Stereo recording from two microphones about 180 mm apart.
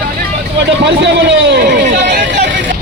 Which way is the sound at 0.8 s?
80° right.